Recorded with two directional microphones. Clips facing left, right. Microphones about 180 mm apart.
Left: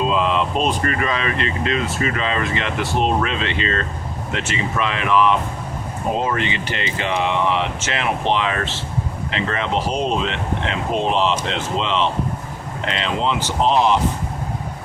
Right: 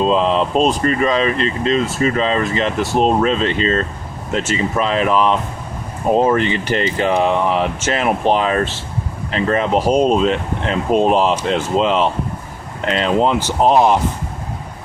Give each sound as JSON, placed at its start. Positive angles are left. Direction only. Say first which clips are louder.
{"t": 0.0, "sound": "speech", "louder": "right 4 dB", "side_deg": -35}